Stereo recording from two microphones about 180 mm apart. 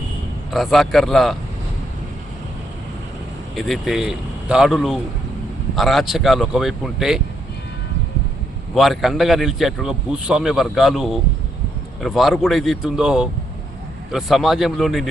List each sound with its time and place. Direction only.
0.5 s speech: centre (ahead or behind)
3.5 s speech: centre (ahead or behind)
8.7 s speech: centre (ahead or behind)